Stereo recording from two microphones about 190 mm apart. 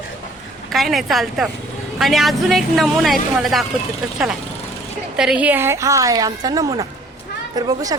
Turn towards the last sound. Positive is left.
turn(degrees=-20)  # may be behind; listen again after turning